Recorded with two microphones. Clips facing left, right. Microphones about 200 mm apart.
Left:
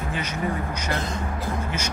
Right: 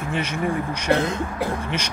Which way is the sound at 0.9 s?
65° right (ahead or behind).